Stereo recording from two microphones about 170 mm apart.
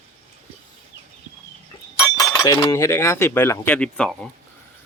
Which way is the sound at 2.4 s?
20° left (ahead or behind).